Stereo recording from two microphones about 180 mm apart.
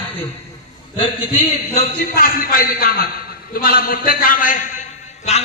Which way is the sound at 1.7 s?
55° left (ahead or behind).